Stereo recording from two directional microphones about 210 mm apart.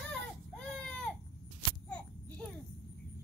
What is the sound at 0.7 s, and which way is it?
Baby cry, 5° left (ahead or behind).